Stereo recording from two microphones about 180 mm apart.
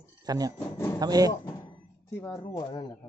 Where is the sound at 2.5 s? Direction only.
20° left (ahead or behind).